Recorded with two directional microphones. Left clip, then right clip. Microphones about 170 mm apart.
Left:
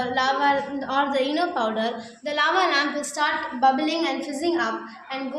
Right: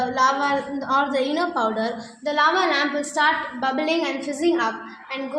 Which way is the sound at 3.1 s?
70° right (ahead or behind).